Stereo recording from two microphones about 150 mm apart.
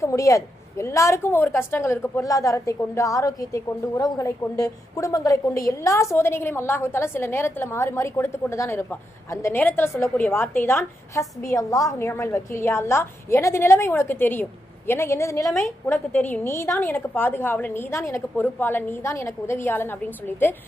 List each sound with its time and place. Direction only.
0.0 s a woman's voice: 20° left (ahead or behind)
15.4 s a woman's voice: centre (ahead or behind)